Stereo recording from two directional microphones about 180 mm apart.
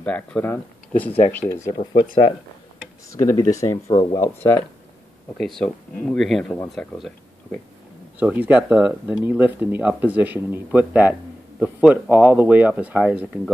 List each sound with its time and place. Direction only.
0.0 s speech: 10° left (ahead or behind)
1.5 s speech: 20° left (ahead or behind)
3.2 s speech: 20° left (ahead or behind); by 7.1 s 5° left (ahead or behind)
8.2 s speech: 10° right (ahead or behind)